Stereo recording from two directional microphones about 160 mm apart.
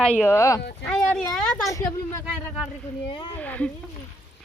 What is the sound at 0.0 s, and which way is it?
Speech, 10° left (ahead or behind).